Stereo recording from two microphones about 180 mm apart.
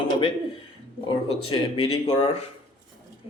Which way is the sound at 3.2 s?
15° right (ahead or behind).